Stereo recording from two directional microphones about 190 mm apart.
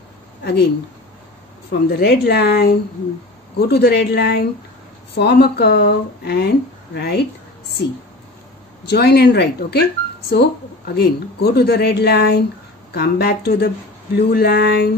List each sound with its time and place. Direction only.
0.4 s speech: 60° left (ahead or behind)
1.7 s speech: 55° left (ahead or behind)
8.8 s speech: 60° left (ahead or behind)